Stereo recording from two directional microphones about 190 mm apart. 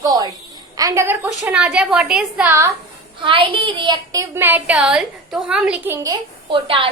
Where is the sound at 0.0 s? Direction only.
20° right (ahead or behind).